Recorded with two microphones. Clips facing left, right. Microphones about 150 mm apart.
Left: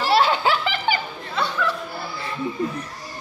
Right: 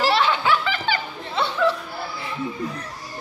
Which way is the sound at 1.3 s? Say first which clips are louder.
Right 3 dB; 25° right (ahead or behind).